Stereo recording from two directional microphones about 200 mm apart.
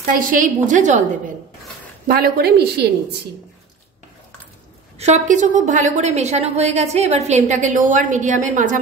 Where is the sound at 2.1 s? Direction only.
50° right (ahead or behind).